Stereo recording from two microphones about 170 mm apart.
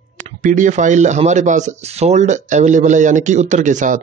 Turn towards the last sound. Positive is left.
turn(degrees=-50)  # may be behind; listen again after turning